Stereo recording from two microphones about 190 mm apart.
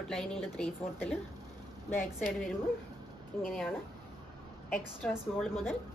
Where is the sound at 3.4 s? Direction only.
5° left (ahead or behind).